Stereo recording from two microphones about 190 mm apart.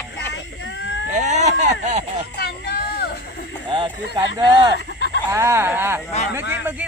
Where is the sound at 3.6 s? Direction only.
25° right (ahead or behind).